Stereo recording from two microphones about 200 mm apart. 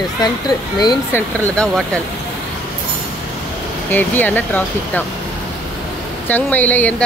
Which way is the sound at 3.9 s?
10° left (ahead or behind).